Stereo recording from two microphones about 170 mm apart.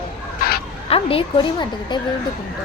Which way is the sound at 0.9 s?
35° left (ahead or behind).